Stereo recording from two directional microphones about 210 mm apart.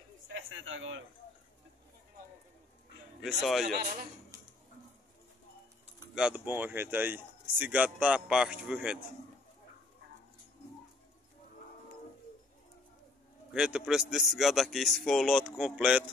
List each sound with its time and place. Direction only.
0.3 s a sound: 65° right (ahead or behind)
3.2 s speech: centre (ahead or behind)
6.1 s speech: 5° right (ahead or behind)
13.5 s speech: 5° right (ahead or behind)